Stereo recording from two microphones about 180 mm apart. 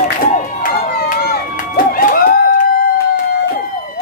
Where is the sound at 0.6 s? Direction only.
55° left (ahead or behind).